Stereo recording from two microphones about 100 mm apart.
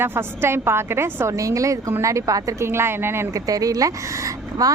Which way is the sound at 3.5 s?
35° right (ahead or behind).